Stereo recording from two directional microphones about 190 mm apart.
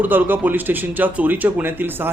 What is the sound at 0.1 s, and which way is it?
Speech, 10° right (ahead or behind).